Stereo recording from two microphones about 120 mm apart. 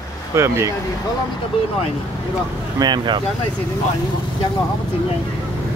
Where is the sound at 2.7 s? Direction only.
35° right (ahead or behind).